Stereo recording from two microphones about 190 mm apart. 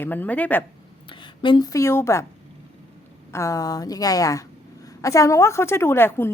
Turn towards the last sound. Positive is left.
turn(degrees=10)  # may be behind; listen again after turning